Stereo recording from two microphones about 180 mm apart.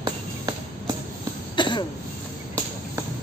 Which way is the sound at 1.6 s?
25° left (ahead or behind).